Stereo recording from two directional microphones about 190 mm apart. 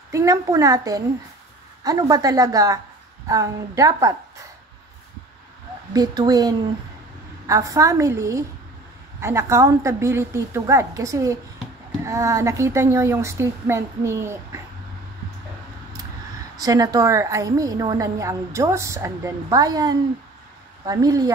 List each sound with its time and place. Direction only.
0.1 s a woman's voice: 15° right (ahead or behind)
5.9 s a woman's voice: 20° right (ahead or behind)
16.5 s a woman's voice: 20° right (ahead or behind)